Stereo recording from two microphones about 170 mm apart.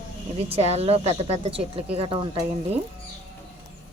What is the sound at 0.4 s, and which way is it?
Speech, 35° right (ahead or behind).